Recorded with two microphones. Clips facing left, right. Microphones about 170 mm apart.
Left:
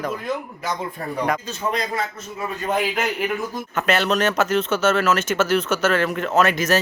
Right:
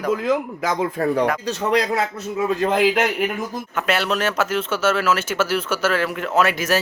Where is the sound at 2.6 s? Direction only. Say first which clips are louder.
Right 4 dB; 90° right; by 3.2 s 70° right (ahead or behind).